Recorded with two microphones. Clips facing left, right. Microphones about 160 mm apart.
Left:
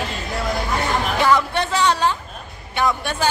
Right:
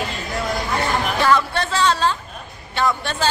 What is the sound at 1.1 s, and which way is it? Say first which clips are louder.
A woman's voice: left 1 dB; 15° left (ahead or behind).